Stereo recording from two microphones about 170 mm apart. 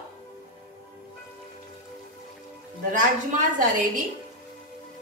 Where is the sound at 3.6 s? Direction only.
50° right (ahead or behind).